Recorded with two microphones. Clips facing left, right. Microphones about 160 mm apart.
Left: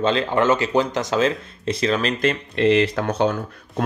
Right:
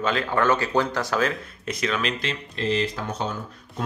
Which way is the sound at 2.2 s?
60° left (ahead or behind).